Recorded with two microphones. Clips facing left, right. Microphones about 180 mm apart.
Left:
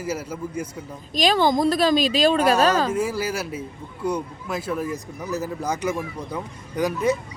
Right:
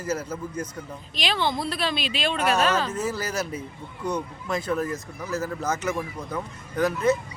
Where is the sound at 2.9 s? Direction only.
10° left (ahead or behind).